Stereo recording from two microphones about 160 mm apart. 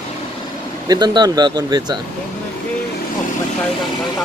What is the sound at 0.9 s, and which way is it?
Speech, 25° right (ahead or behind).